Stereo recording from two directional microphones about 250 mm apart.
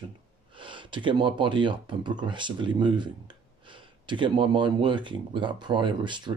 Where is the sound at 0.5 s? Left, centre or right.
Centre.